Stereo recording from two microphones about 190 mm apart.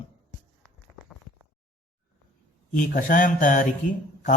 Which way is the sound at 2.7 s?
45° left (ahead or behind).